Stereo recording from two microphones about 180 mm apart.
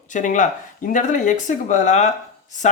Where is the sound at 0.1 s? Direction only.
45° left (ahead or behind).